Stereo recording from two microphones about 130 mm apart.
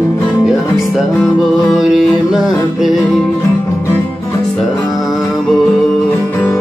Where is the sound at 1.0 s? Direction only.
Centre (ahead or behind).